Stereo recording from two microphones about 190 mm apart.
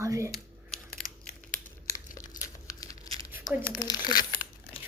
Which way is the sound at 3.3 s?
10° right (ahead or behind).